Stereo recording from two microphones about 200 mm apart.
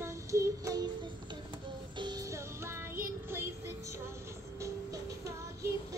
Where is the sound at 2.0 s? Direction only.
20° right (ahead or behind).